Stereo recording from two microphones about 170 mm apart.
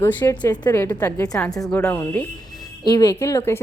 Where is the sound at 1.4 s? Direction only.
5° left (ahead or behind).